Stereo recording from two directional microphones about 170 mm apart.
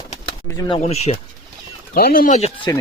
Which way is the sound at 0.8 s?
40° left (ahead or behind).